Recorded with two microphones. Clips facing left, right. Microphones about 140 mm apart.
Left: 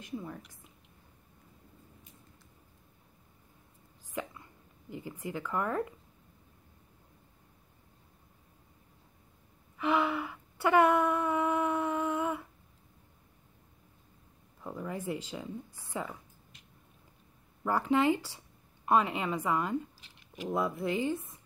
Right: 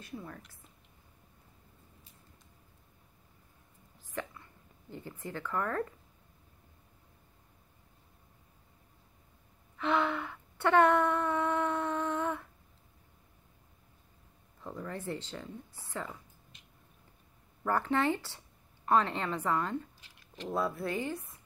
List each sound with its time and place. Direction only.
0.0 s speech: 15° left (ahead or behind)
4.1 s speech: 15° left (ahead or behind)
9.8 s a sound: 10° left (ahead or behind)
14.6 s speech: 10° left (ahead or behind)
17.6 s speech: 10° left (ahead or behind)